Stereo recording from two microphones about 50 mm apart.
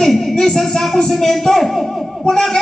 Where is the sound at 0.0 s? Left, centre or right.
Centre.